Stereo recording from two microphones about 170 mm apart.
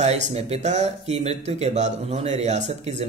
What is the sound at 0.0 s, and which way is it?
Speech, 40° right (ahead or behind).